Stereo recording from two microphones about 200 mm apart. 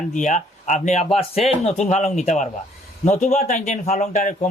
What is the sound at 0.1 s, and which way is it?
A man's voice, 40° left (ahead or behind).